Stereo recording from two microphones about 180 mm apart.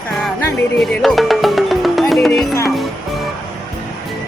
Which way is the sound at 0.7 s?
Centre (ahead or behind).